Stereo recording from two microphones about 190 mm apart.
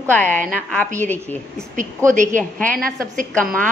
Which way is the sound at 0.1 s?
10° left (ahead or behind).